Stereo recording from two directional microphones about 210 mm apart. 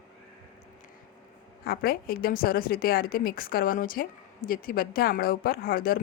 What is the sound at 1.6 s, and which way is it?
A woman's voice, 45° left (ahead or behind).